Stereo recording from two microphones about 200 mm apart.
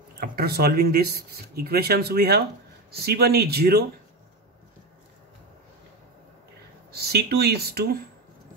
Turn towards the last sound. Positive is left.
turn(degrees=-50)  # may be behind; listen again after turning